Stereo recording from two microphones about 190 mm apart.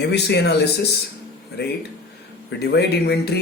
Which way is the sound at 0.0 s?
60° left (ahead or behind).